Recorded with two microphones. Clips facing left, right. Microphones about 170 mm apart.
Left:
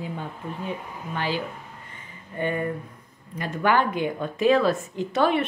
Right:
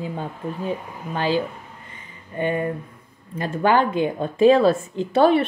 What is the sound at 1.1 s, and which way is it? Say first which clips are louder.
Speech: right 6 dB; 30° right (ahead or behind).